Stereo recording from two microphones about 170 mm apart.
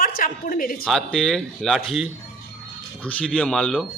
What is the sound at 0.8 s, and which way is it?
Speech, centre (ahead or behind).